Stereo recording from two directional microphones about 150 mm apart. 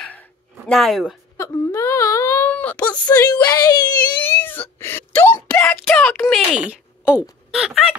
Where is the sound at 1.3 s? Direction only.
20° left (ahead or behind).